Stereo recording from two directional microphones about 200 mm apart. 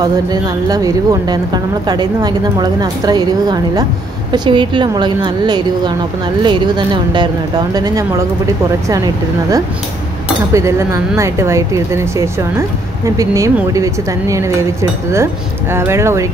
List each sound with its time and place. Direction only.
0.0 s speech: 20° right (ahead or behind)